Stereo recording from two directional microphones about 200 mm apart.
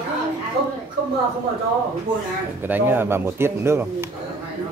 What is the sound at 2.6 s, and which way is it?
Speech, 10° right (ahead or behind).